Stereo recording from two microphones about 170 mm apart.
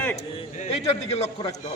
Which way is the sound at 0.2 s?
40° left (ahead or behind).